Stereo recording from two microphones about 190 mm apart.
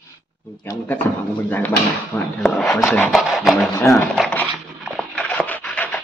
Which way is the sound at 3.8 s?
15° left (ahead or behind).